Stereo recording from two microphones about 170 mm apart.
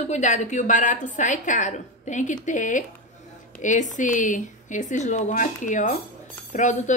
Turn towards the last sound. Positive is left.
turn(degrees=45)  # may be behind; listen again after turning